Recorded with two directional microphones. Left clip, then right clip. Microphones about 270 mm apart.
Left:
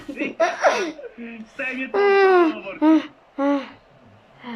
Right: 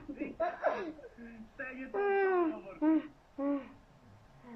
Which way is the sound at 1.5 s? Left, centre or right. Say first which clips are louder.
Left 16 dB; centre.